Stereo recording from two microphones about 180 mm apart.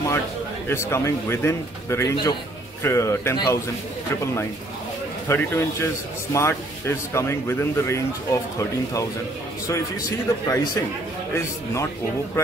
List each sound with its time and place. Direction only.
0.7 s a man's voice: 15° left (ahead or behind)
5.3 s a man's voice: 15° left (ahead or behind)